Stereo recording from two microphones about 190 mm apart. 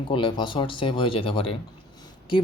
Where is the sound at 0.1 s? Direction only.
25° left (ahead or behind).